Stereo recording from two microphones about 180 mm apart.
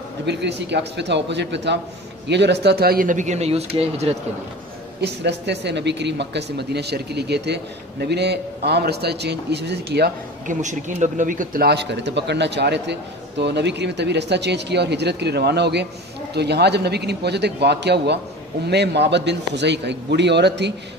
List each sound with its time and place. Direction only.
0.3 s speech: 70° right (ahead or behind); by 4.2 s 35° right (ahead or behind)
5.0 s speech: 75° right (ahead or behind)